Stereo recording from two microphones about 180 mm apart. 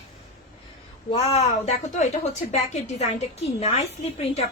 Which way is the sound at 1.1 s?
35° left (ahead or behind).